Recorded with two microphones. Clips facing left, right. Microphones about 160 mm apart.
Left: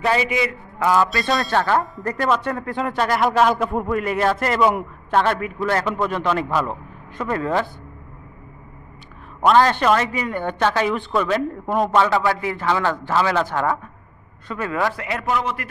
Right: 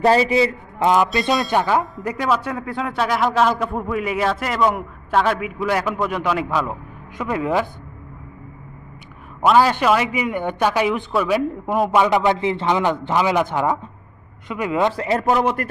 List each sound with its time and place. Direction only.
0.0 s a man's voice: 35° right (ahead or behind)
0.7 s a man's voice: 20° right (ahead or behind)
9.4 s speech: 5° right (ahead or behind)
12.0 s a man's voice: 20° right (ahead or behind)
15.0 s a man's voice: 35° right (ahead or behind)